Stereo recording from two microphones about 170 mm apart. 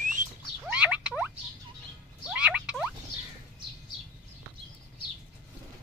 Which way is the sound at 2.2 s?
5° right (ahead or behind).